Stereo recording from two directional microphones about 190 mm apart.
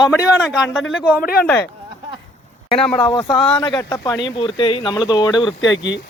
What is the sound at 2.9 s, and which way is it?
Speech, 20° left (ahead or behind).